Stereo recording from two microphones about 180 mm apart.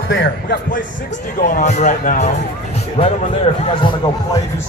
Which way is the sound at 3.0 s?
30° left (ahead or behind).